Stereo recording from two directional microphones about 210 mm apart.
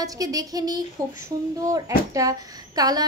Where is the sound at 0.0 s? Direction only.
15° right (ahead or behind).